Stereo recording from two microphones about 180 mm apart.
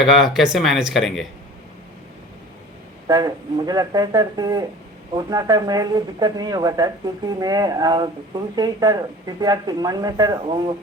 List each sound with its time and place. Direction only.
0.1 s speech: centre (ahead or behind)
3.1 s speech: 20° right (ahead or behind)